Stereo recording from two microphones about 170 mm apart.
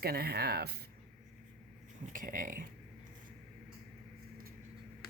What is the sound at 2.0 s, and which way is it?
Speech, 50° right (ahead or behind).